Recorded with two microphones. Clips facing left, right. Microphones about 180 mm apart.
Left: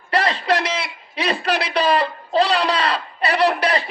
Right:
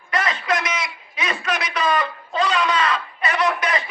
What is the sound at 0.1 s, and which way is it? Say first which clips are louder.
A man's voice: left 4 dB; 35° left (ahead or behind).